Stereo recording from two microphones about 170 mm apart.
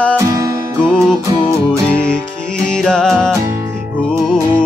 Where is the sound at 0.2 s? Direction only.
20° right (ahead or behind).